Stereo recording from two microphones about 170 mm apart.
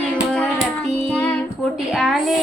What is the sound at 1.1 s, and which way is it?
Music, 5° left (ahead or behind).